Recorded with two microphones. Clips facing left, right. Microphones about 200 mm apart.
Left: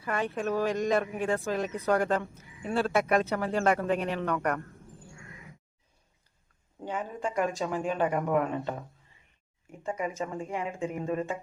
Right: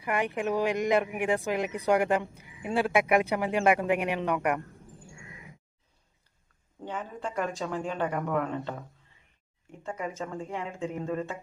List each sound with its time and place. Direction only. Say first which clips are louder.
0.0 s speech: right 1 dB; 15° right (ahead or behind)
5.1 s crow: even; 15° right (ahead or behind)
6.8 s speech: left 2 dB; 15° left (ahead or behind)
9.8 s speech: left 2 dB; 10° left (ahead or behind)